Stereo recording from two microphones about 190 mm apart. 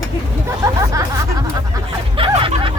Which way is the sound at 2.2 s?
30° right (ahead or behind).